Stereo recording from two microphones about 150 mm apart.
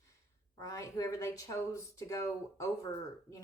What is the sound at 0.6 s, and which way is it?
A woman's voice, 20° left (ahead or behind).